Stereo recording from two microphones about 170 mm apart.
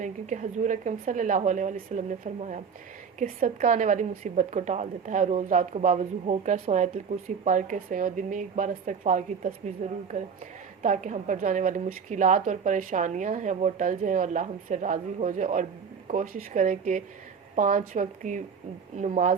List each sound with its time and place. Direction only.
0.0 s a woman's voice: 45° right (ahead or behind)